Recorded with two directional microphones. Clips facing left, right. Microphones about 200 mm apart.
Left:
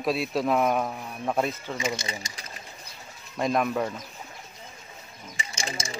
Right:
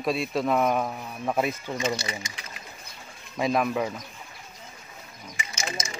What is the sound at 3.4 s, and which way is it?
Speech, centre (ahead or behind).